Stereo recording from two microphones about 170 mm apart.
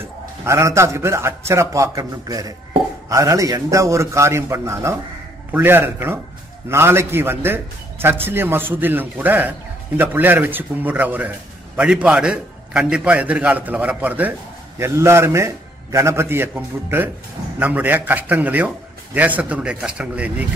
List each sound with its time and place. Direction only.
0.0 s a man's voice: 15° right (ahead or behind)